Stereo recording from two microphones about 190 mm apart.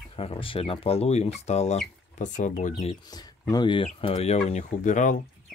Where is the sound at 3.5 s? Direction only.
25° left (ahead or behind).